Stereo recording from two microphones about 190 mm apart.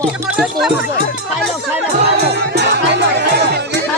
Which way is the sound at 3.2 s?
60° right (ahead or behind).